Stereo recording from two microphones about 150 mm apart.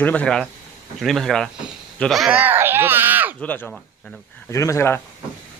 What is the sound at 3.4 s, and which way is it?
Speech, 10° left (ahead or behind).